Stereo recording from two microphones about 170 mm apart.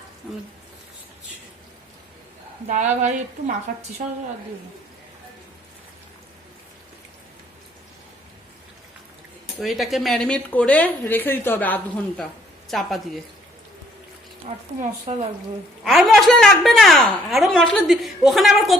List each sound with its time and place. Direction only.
2.6 s a woman's voice: 45° right (ahead or behind)
9.6 s a woman's voice: centre (ahead or behind)
14.4 s speech: 40° right (ahead or behind)
15.8 s a woman's voice: centre (ahead or behind)